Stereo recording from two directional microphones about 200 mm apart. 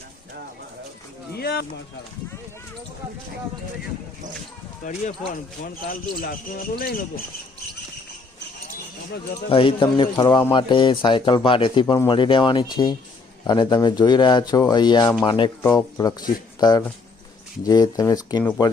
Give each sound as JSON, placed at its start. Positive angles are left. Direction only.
{"t": 1.4, "sound": "a sound", "side_deg": 50}
{"t": 4.8, "sound": "speech", "side_deg": 40}
{"t": 9.5, "sound": "speech", "side_deg": 25}
{"t": 16.6, "sound": "speech", "side_deg": 20}